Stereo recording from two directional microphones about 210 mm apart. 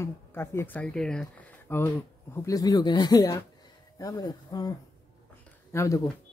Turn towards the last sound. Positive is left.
turn(degrees=15)  # may be behind; listen again after turning